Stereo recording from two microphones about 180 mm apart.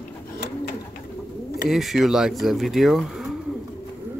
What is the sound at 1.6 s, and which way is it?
Speech, centre (ahead or behind).